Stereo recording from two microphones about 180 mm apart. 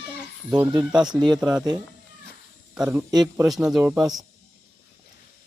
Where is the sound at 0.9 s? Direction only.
5° right (ahead or behind).